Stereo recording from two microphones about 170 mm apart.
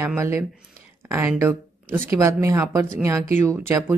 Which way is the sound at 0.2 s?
15° right (ahead or behind).